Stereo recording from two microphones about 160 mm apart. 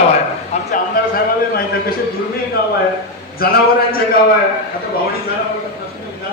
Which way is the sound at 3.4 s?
70° left (ahead or behind).